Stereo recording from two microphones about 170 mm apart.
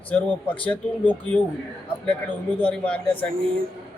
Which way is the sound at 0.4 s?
30° left (ahead or behind).